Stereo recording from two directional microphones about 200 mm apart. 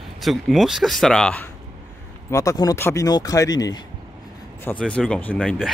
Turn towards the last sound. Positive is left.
turn(degrees=5)  # may be behind; listen again after turning